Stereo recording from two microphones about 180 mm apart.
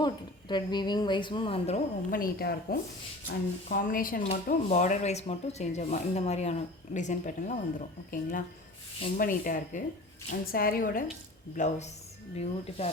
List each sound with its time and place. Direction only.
0.0 s a woman's voice: 25° left (ahead or behind)
2.0 s a woman's voice: 55° left (ahead or behind); by 12.9 s 35° left (ahead or behind)